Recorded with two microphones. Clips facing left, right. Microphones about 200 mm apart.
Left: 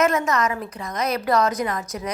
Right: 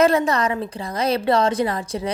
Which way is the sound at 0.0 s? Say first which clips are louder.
Right 3 dB; 30° right (ahead or behind).